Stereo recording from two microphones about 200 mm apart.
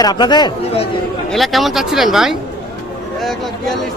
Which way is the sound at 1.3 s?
Centre (ahead or behind).